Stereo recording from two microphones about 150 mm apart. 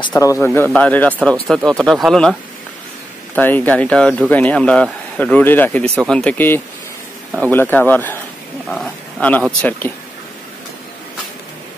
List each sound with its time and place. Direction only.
0.2 s speech: 20° left (ahead or behind)
0.7 s speech: 10° left (ahead or behind)
3.3 s speech: 10° left (ahead or behind)